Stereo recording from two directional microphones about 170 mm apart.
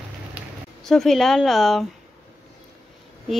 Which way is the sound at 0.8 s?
Centre (ahead or behind).